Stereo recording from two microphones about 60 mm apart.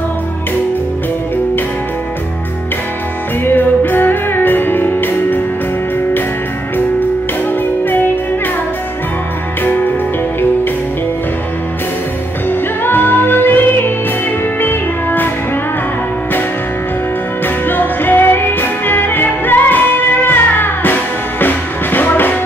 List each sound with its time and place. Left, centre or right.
3.4 s music: left
12.4 s music: left
17.6 s music: left